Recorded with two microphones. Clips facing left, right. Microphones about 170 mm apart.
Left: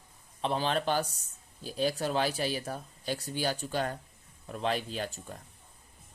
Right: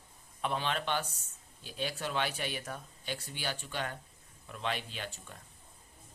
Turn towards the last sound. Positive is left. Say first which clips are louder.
# left 7 dB
turn(degrees=40)  # may be behind; listen again after turning